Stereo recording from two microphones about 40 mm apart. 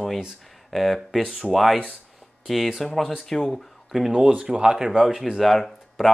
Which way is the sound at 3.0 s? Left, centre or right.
Centre.